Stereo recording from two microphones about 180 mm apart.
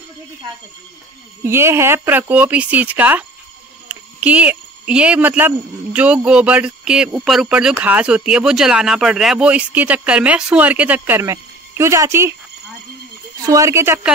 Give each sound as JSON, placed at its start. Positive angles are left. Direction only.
{"t": 1.4, "sound": "speech", "side_deg": -15}
{"t": 13.5, "sound": "speech", "side_deg": -15}